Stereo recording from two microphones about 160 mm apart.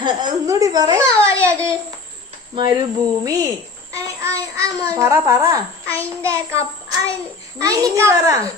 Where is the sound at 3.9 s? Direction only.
20° right (ahead or behind).